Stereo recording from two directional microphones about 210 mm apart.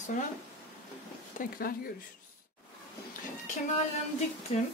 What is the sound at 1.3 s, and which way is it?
Speech, 45° left (ahead or behind).